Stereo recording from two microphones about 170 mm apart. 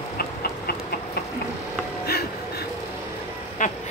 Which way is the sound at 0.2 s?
65° left (ahead or behind).